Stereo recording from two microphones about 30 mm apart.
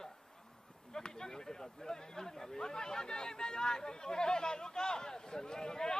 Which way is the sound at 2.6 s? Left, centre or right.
Left.